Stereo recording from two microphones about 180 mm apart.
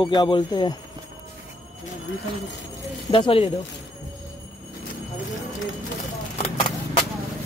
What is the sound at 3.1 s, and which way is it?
Speech, 30° left (ahead or behind).